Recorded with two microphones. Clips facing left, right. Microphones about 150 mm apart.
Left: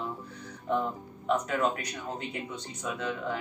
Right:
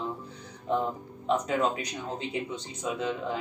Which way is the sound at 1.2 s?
20° right (ahead or behind).